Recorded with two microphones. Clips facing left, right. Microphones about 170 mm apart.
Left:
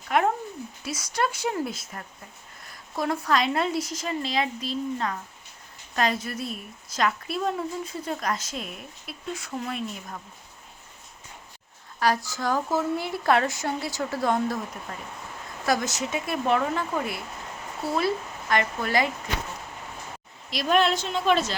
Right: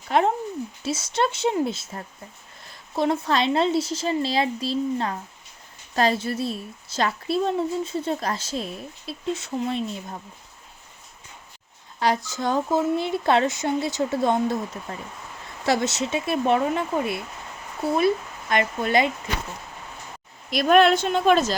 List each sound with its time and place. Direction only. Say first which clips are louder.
0.1 s a woman's voice: right 3 dB; 25° right (ahead or behind)
11.9 s a woman's voice: right 1 dB; 25° right (ahead or behind)
20.5 s a woman's voice: right 6 dB; 55° right (ahead or behind)